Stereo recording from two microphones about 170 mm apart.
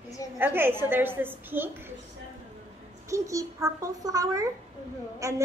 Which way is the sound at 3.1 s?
20° right (ahead or behind).